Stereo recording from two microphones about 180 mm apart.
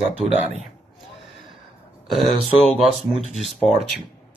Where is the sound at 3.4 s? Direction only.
Centre (ahead or behind).